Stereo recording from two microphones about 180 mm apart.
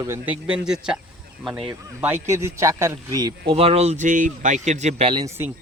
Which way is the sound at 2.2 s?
15° right (ahead or behind).